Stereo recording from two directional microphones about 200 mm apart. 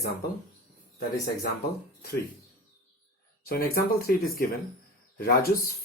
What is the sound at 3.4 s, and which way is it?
Speech, 50° left (ahead or behind).